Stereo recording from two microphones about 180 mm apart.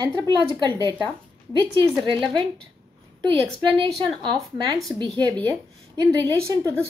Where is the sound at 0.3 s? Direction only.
25° right (ahead or behind).